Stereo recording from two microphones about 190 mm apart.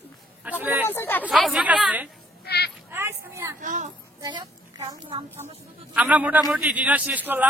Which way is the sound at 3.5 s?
40° right (ahead or behind).